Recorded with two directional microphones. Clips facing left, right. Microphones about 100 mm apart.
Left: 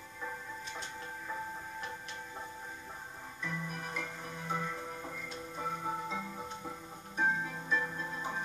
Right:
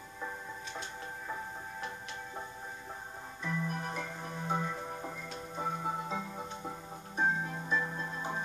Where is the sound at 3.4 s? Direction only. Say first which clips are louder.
Right 4 dB; 25° right (ahead or behind).